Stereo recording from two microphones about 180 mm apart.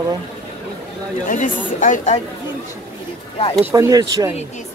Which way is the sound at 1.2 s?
45° left (ahead or behind).